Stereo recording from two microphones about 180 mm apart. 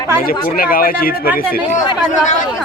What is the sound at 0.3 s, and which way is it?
Speech, 55° left (ahead or behind).